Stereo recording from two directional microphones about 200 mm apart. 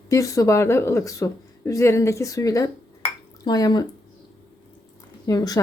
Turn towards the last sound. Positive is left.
turn(degrees=20)  # may be behind; listen again after turning